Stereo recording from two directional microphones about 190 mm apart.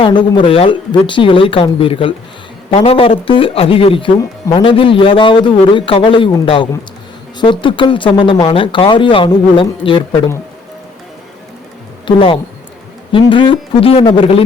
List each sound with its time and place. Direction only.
0.0 s speech: 25° left (ahead or behind)
12.0 s speech: 25° left (ahead or behind)